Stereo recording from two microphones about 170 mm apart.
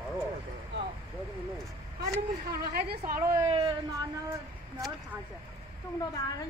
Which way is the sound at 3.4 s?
35° right (ahead or behind).